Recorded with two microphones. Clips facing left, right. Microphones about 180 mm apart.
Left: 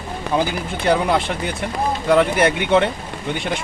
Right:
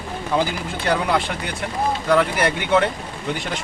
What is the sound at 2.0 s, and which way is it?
Speech, 20° left (ahead or behind).